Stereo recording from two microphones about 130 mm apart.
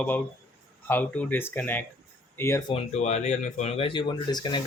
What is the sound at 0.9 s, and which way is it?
Speech, 15° left (ahead or behind).